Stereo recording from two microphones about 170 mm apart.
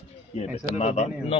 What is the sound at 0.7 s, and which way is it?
Speech, 40° left (ahead or behind).